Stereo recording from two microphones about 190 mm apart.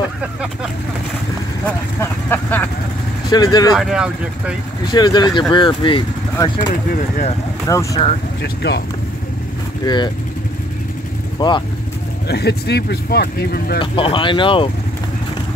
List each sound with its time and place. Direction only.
1.7 s speech: 10° left (ahead or behind)
3.3 s speech: 20° left (ahead or behind)
3.7 s speech: 5° right (ahead or behind)
4.8 s speech: 20° left (ahead or behind)
6.7 s speech: 45° left (ahead or behind)
7.6 s speech: 15° left (ahead or behind)
8.4 s speech: 60° left (ahead or behind)
9.8 s speech: 25° left (ahead or behind)
11.3 s speech: 25° left (ahead or behind)
12.3 s speech: 60° left (ahead or behind)
13.7 s speech: 25° left (ahead or behind)